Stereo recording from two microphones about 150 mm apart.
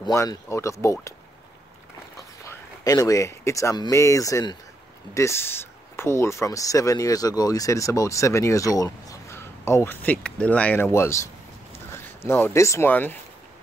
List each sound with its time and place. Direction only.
0.0 s speech: 25° left (ahead or behind)
2.4 s speech: 25° left (ahead or behind)